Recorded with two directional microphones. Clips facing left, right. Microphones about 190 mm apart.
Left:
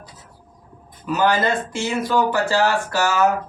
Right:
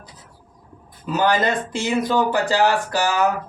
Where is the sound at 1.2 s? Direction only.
15° right (ahead or behind).